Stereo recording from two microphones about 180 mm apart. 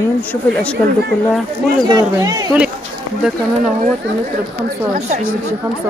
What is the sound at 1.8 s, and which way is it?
Speech, 20° right (ahead or behind).